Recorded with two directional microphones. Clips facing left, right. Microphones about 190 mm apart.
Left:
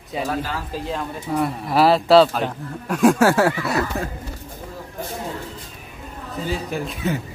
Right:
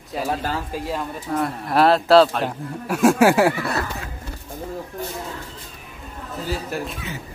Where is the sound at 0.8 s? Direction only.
5° right (ahead or behind).